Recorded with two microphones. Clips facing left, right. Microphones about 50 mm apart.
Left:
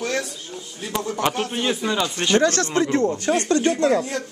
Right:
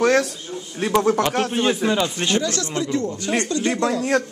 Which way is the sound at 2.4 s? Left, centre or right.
Left.